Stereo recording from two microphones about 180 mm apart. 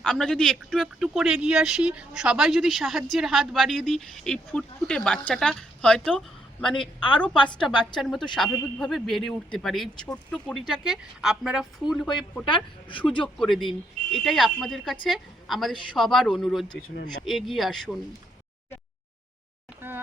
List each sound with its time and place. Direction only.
0.0 s speech: 5° left (ahead or behind)
8.0 s speech: centre (ahead or behind)
12.5 s speech: 30° left (ahead or behind)
13.2 s speech: centre (ahead or behind)
16.9 s speech: 55° left (ahead or behind)
17.2 s speech: centre (ahead or behind)
19.8 s a sound: 10° right (ahead or behind)